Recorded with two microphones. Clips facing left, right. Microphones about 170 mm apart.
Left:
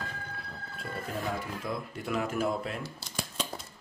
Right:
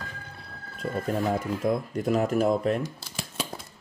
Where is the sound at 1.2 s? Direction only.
45° right (ahead or behind).